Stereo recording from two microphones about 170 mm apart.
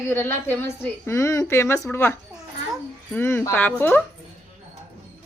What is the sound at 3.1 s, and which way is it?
Speech, 15° left (ahead or behind).